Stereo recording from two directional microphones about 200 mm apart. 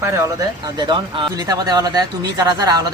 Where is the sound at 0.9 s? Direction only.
25° right (ahead or behind).